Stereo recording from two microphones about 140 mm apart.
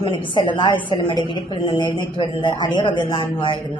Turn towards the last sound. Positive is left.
turn(degrees=35)  # may be behind; listen again after turning